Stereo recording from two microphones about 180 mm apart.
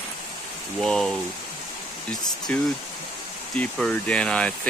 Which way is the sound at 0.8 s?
Centre (ahead or behind).